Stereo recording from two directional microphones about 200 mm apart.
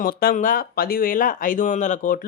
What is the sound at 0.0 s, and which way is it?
Speech, 45° left (ahead or behind).